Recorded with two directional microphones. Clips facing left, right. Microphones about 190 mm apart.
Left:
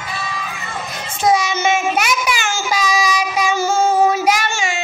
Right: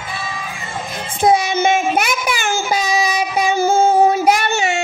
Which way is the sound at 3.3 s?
55° right (ahead or behind).